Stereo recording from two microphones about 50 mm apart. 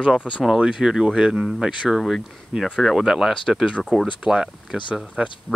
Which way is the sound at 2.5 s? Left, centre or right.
Centre.